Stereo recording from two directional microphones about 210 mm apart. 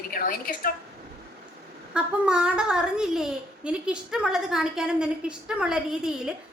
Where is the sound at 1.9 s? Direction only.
5° right (ahead or behind).